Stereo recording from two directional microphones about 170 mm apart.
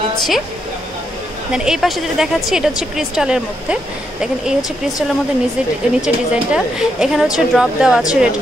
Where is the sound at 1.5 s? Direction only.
5° right (ahead or behind).